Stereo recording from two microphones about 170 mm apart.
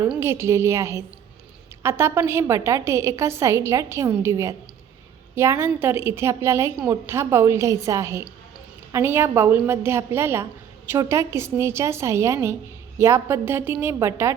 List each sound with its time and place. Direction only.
0.2 s a woman's voice: 15° right (ahead or behind)